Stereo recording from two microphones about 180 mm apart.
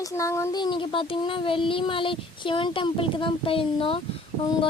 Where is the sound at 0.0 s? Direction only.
15° left (ahead or behind).